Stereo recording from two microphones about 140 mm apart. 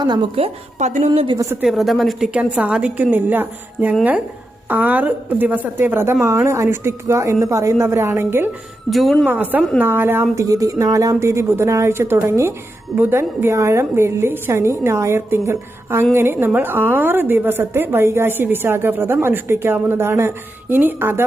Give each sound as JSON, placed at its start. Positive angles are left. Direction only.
{"t": 0.0, "sound": "speech", "side_deg": -30}
{"t": 0.3, "sound": "a woman's voice", "side_deg": -50}
{"t": 1.6, "sound": "a woman's voice", "side_deg": 0}
{"t": 8.9, "sound": "speech", "side_deg": 0}
{"t": 9.3, "sound": "a woman's voice", "side_deg": -10}